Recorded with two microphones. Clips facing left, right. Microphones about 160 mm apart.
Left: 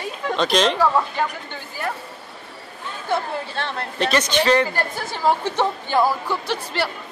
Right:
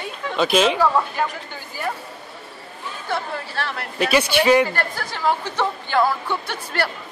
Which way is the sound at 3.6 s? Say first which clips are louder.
Right 1 dB; 25° left (ahead or behind).